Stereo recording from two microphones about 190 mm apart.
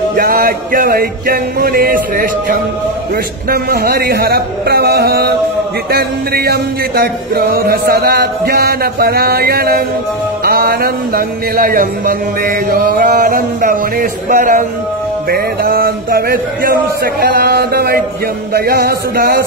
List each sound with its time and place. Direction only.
0.1 s speech: 50° right (ahead or behind)
3.4 s music: 55° right (ahead or behind)
10.4 s speech: 55° right (ahead or behind)